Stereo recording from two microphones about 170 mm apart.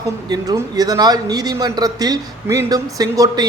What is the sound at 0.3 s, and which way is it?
A man's voice, 20° right (ahead or behind).